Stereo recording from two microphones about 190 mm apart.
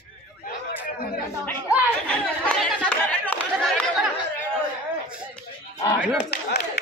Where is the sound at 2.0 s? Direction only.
5° left (ahead or behind).